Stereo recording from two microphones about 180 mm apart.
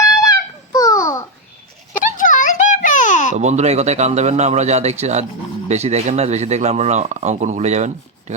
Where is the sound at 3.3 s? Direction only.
40° right (ahead or behind).